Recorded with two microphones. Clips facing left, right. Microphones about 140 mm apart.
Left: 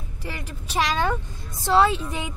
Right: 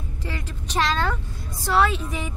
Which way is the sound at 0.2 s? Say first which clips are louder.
Right 1 dB; 10° left (ahead or behind).